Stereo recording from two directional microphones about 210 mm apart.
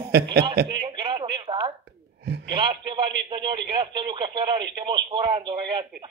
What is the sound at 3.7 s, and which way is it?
Speech, 25° right (ahead or behind).